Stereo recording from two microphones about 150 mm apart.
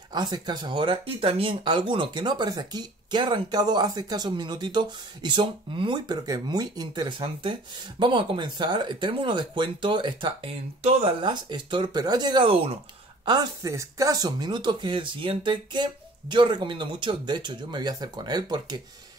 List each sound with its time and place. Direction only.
0.1 s speech: 30° right (ahead or behind)